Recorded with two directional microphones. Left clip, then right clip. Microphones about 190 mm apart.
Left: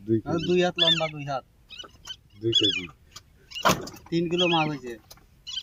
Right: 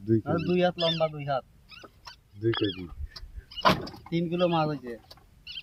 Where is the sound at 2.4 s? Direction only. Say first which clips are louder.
Left 6 dB; 15° right (ahead or behind).